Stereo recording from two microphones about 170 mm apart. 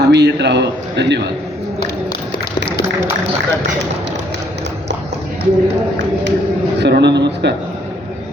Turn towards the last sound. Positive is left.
turn(degrees=-90)